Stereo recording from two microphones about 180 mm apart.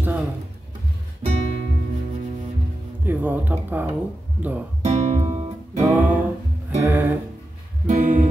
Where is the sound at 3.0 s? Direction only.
10° right (ahead or behind).